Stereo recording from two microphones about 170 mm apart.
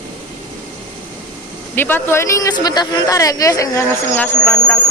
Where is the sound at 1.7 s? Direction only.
15° left (ahead or behind).